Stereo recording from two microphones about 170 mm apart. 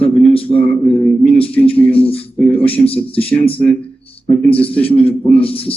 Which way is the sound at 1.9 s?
35° left (ahead or behind).